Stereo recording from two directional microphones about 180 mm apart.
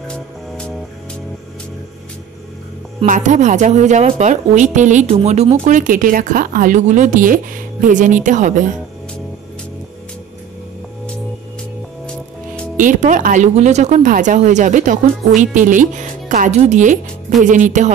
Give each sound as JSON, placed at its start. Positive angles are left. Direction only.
{"t": 3.1, "sound": "a woman's voice", "side_deg": -40}
{"t": 12.7, "sound": "a woman's voice", "side_deg": -45}